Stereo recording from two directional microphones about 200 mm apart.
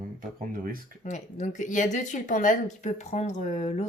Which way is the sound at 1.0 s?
35° left (ahead or behind).